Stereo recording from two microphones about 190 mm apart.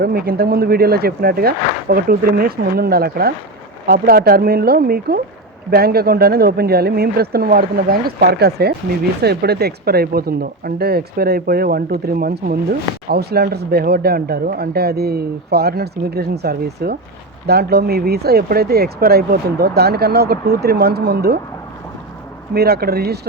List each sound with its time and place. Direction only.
0.0 s speech: 55° right (ahead or behind)
22.5 s speech: 55° right (ahead or behind)